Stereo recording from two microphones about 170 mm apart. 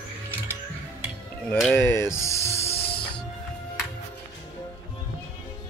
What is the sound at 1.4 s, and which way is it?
Music, 10° left (ahead or behind).